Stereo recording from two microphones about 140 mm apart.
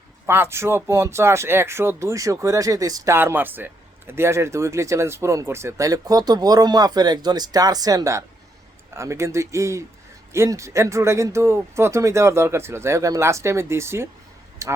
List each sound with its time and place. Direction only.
0.3 s speech: 15° right (ahead or behind)